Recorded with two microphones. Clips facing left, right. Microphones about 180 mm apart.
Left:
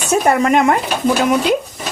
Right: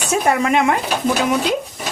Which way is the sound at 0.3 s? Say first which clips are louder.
Left 3 dB; 45° left (ahead or behind).